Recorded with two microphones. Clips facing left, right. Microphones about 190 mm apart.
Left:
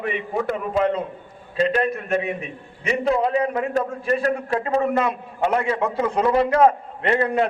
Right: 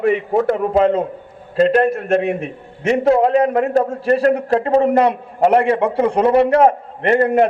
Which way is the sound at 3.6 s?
40° right (ahead or behind).